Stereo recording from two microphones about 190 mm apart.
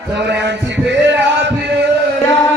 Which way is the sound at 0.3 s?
65° right (ahead or behind).